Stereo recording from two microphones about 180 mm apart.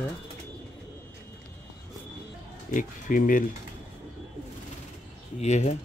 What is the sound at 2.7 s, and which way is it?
Speech, 50° left (ahead or behind).